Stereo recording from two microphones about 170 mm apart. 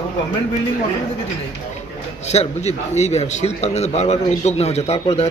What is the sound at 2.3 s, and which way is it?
A man's voice, 40° left (ahead or behind).